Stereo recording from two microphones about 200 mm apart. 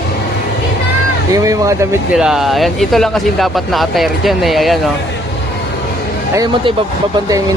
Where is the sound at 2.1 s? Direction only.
5° right (ahead or behind).